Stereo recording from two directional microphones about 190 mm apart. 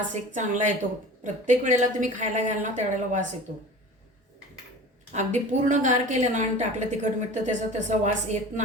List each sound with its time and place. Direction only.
0.1 s a woman's voice: 40° right (ahead or behind)
5.1 s a woman's voice: 40° right (ahead or behind)